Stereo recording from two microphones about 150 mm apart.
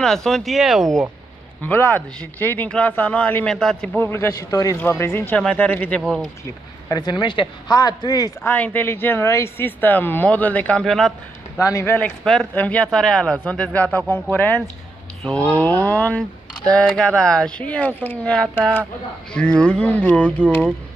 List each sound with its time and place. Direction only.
0.0 s speech: 5° left (ahead or behind)
1.6 s speech: 15° left (ahead or behind)
6.9 s speech: 30° left (ahead or behind)
8.5 s speech: 10° left (ahead or behind)
11.6 s speech: 20° left (ahead or behind)